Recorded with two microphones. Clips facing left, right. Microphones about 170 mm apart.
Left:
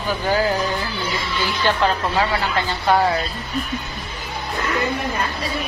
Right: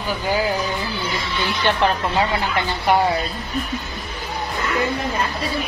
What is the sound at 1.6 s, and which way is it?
Speech, 20° right (ahead or behind).